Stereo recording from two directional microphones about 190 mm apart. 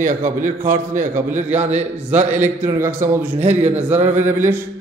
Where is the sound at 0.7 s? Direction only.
45° right (ahead or behind).